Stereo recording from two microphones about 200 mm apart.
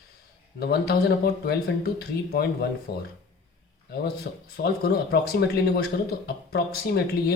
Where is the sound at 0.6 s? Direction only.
55° left (ahead or behind).